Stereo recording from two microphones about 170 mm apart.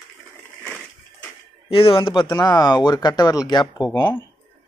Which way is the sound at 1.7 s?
35° left (ahead or behind).